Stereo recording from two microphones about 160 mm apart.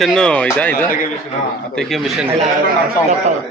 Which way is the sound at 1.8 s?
Centre (ahead or behind).